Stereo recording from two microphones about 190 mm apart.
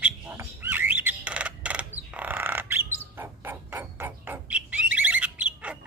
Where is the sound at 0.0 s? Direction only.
10° right (ahead or behind).